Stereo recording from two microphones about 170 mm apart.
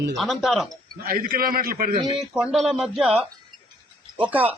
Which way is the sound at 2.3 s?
5° right (ahead or behind).